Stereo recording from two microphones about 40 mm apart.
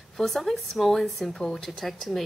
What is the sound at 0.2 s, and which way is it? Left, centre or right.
A woman's voice, centre.